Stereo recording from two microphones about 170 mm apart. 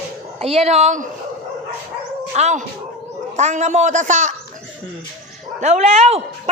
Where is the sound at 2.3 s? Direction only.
45° right (ahead or behind).